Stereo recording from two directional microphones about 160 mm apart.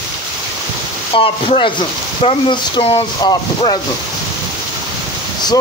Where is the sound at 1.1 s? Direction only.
35° left (ahead or behind).